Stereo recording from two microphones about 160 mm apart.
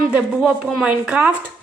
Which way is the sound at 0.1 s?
5° right (ahead or behind).